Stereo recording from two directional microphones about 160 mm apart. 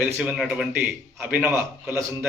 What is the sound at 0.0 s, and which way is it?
A man's voice, 5° right (ahead or behind).